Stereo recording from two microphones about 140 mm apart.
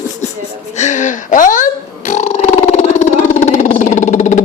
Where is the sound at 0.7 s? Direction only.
55° left (ahead or behind).